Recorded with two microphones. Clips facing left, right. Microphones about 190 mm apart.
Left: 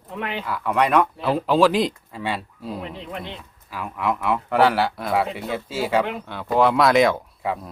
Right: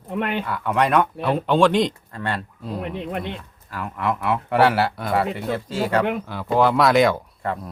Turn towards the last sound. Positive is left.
turn(degrees=0)  # may be behind; listen again after turning